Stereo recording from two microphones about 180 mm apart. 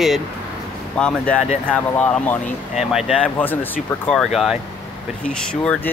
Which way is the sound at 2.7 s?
5° right (ahead or behind).